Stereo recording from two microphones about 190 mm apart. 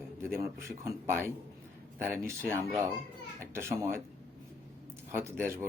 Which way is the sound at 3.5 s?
15° right (ahead or behind).